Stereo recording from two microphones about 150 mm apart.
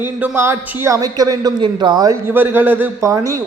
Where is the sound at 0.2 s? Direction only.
15° right (ahead or behind).